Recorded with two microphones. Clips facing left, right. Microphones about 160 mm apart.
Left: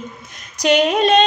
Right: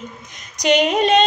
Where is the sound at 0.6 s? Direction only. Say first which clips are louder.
Left 1 dB; 15° right (ahead or behind).